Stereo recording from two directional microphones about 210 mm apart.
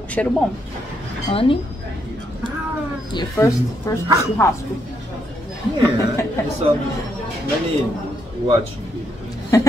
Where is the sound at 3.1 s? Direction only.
15° left (ahead or behind).